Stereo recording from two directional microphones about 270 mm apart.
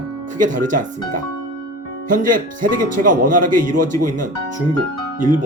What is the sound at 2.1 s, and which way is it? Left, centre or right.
Speech, right.